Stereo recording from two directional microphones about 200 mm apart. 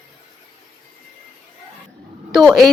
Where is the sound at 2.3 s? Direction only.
Centre (ahead or behind).